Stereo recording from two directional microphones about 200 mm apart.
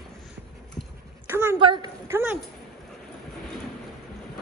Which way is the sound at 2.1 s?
10° right (ahead or behind).